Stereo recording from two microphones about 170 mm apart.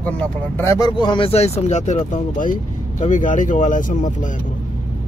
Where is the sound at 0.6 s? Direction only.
20° left (ahead or behind); by 4.3 s 50° left (ahead or behind).